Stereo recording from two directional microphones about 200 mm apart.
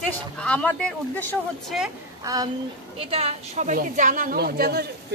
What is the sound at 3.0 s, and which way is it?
A woman's voice, 30° right (ahead or behind).